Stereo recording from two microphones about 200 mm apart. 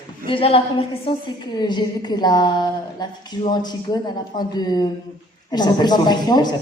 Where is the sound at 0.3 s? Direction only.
25° left (ahead or behind).